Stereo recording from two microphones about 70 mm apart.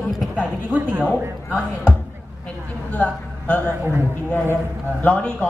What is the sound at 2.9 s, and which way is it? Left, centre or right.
Speech, left.